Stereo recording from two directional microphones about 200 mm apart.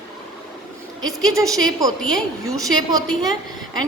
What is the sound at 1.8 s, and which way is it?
A woman's voice, 20° right (ahead or behind).